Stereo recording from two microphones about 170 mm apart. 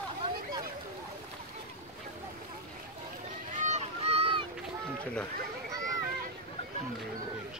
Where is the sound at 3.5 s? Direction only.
45° right (ahead or behind).